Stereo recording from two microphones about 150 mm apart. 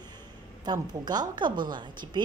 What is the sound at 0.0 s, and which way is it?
A woman's voice, 30° right (ahead or behind).